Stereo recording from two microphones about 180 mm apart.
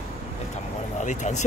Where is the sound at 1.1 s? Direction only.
40° left (ahead or behind).